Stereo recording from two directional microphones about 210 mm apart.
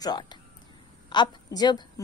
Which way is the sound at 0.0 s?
20° left (ahead or behind).